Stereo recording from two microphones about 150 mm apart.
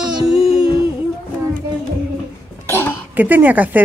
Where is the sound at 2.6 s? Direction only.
15° left (ahead or behind).